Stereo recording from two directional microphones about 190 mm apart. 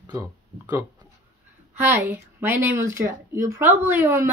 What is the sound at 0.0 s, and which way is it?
Speech, 15° right (ahead or behind).